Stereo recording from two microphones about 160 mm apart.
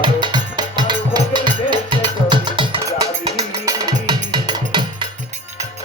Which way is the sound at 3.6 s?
25° right (ahead or behind).